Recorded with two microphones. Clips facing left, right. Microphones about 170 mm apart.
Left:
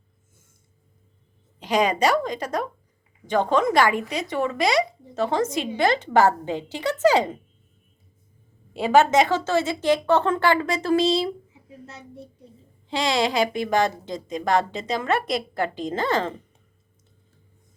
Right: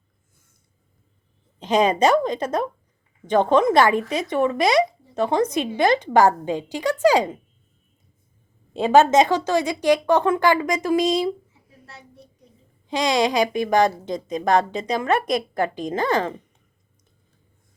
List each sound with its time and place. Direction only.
1.5 s speech: 20° right (ahead or behind)
8.7 s speech: 20° right (ahead or behind)
11.9 s a child's voice: 25° left (ahead or behind)
12.9 s speech: 20° right (ahead or behind)